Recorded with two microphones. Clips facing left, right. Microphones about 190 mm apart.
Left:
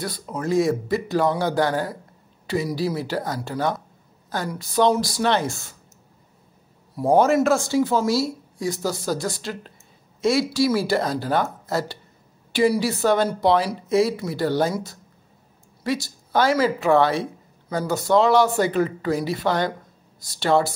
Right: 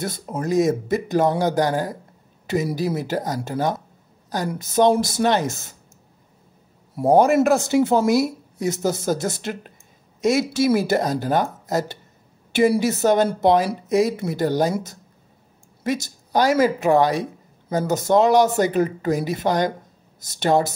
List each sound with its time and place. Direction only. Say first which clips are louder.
0.0 s speech: right 2 dB; 20° right (ahead or behind)
2.6 s speech: even; 45° right (ahead or behind)
3.0 s speech: right 2 dB; 20° right (ahead or behind)
7.1 s speech: right 2 dB; 15° right (ahead or behind)
16.0 s speech: right 1 dB; 15° right (ahead or behind)